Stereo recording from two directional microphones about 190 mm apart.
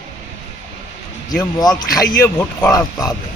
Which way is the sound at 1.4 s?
20° left (ahead or behind).